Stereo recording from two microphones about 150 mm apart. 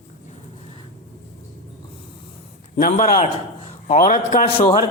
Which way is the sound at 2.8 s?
60° left (ahead or behind).